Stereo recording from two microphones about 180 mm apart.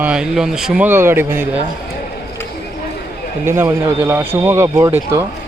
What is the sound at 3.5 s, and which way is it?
Speech, 15° right (ahead or behind).